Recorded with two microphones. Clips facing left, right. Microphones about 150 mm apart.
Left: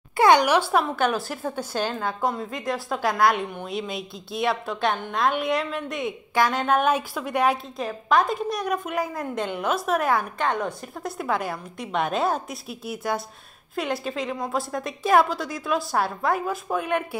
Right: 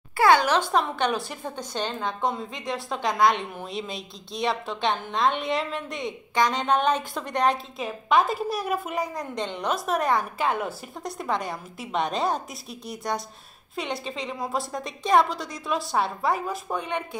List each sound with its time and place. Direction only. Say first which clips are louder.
0.2 s a woman's voice: left 2 dB; 15° left (ahead or behind)